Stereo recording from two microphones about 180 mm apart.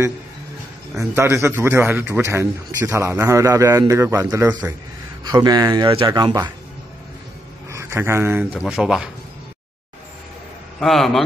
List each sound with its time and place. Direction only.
0.9 s a man's voice: 15° right (ahead or behind)
7.7 s a man's voice: 15° right (ahead or behind)
8.5 s speech: 5° right (ahead or behind)
10.8 s speech: centre (ahead or behind)